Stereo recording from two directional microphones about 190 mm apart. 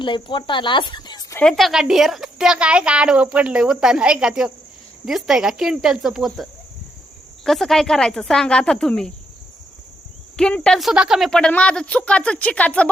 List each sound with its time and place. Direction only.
0.0 s speech: 25° left (ahead or behind)
1.4 s a woman's voice: 5° left (ahead or behind)
10.3 s a woman's voice: 5° left (ahead or behind)